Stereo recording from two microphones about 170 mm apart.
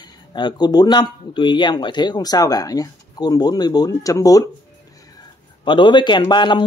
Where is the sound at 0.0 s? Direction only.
25° left (ahead or behind).